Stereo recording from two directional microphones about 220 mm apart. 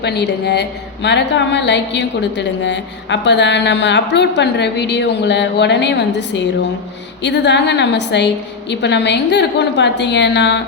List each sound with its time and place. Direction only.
0.0 s a woman's voice: 50° left (ahead or behind)